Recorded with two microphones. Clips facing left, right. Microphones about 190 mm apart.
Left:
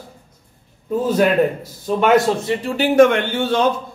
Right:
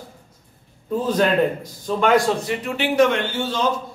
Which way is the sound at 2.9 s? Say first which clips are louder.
Left 5 dB; 55° left (ahead or behind).